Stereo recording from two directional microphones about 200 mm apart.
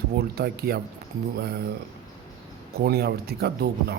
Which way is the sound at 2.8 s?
50° right (ahead or behind).